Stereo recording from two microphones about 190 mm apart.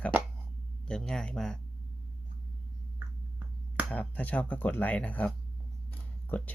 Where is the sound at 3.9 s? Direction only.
10° left (ahead or behind).